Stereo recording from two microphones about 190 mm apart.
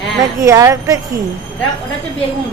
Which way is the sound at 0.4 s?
15° right (ahead or behind).